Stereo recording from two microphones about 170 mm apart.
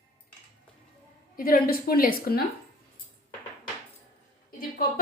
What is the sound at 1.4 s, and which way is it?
A woman's voice, 60° left (ahead or behind).